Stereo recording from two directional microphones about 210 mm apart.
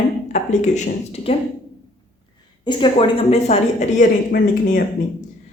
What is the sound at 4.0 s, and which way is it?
Speech, 45° left (ahead or behind).